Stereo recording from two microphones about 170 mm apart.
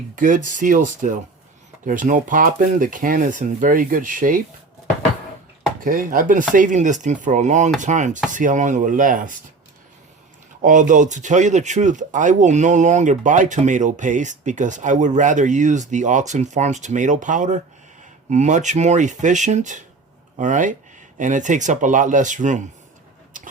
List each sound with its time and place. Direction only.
0.2 s speech: 50° right (ahead or behind)
5.8 s speech: 55° right (ahead or behind)
10.6 s speech: 50° right (ahead or behind)